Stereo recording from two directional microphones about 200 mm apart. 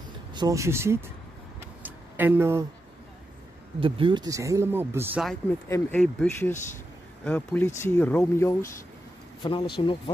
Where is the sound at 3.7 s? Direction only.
25° right (ahead or behind); by 5.2 s 10° right (ahead or behind).